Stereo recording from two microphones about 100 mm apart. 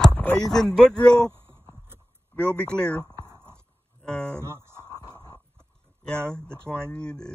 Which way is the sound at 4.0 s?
10° left (ahead or behind).